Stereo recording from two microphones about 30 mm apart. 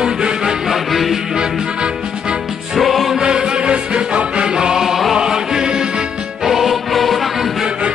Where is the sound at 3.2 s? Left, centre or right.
Right.